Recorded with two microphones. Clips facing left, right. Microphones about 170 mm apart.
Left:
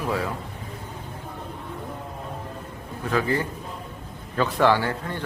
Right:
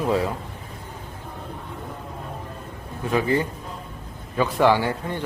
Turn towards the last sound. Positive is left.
turn(degrees=-15)  # may be behind; listen again after turning